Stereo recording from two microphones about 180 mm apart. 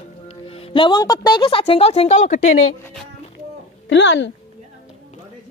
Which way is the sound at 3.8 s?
90° left.